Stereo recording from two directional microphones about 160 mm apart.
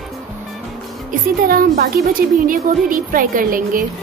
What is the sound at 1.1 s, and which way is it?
Speech, 65° right (ahead or behind).